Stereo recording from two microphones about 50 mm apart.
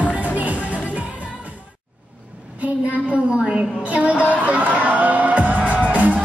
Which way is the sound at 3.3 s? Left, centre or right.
Centre.